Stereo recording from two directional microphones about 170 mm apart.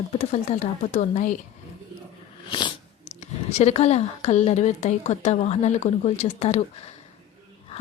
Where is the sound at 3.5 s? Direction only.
40° left (ahead or behind).